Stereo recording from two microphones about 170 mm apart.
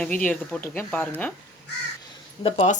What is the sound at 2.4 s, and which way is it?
Speech, 40° left (ahead or behind).